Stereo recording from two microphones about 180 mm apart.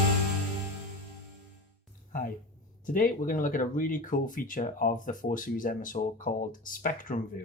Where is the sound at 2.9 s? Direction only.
50° left (ahead or behind).